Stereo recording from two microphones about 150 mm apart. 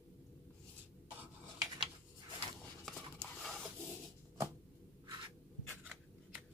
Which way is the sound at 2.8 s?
Centre (ahead or behind).